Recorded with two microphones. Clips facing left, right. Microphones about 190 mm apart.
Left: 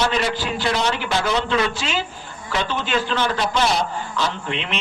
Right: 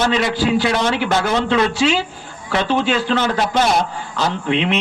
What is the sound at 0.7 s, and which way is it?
A man's voice, 60° right (ahead or behind).